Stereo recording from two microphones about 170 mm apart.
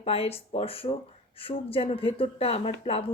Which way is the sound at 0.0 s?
35° left (ahead or behind).